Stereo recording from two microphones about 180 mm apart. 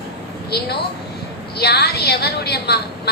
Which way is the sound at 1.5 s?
65° left (ahead or behind).